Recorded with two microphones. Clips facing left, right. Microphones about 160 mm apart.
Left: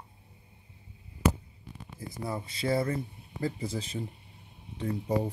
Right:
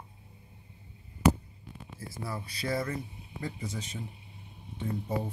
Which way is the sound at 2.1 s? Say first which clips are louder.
Left 3 dB; 20° left (ahead or behind).